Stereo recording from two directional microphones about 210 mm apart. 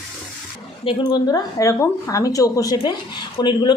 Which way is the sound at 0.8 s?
20° left (ahead or behind).